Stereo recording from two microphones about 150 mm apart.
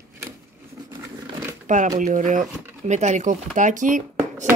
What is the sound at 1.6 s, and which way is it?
Speech, 55° right (ahead or behind).